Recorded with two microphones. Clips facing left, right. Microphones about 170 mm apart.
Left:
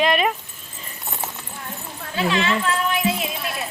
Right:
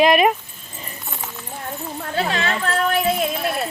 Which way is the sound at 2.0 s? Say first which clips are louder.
Left 1 dB; 50° right (ahead or behind).